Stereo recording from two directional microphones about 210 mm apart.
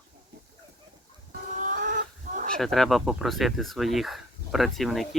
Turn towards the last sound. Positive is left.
turn(degrees=0)  # may be behind; listen again after turning